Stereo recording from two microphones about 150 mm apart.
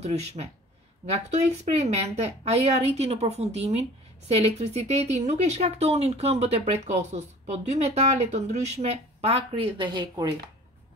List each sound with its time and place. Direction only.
0.0 s speech: 50° right (ahead or behind); by 10.2 s 30° right (ahead or behind)